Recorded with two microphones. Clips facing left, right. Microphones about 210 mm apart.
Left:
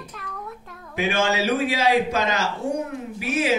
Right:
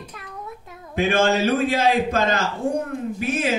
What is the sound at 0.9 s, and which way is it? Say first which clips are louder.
A man's voice: right 3 dB; 50° right (ahead or behind).